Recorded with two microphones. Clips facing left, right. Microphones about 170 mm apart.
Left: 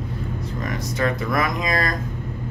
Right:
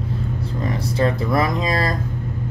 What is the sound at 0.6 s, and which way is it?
Speech, 30° right (ahead or behind).